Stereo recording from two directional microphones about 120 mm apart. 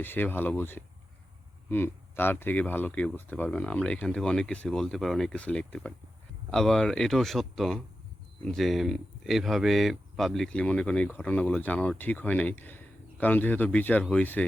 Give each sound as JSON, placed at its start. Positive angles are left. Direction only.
{"t": 0.0, "sound": "speech", "side_deg": 15}